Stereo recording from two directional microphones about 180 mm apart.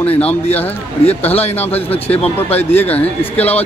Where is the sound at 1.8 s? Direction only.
10° left (ahead or behind).